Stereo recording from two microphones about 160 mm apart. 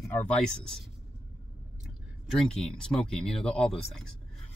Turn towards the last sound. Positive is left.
turn(degrees=5)  # may be behind; listen again after turning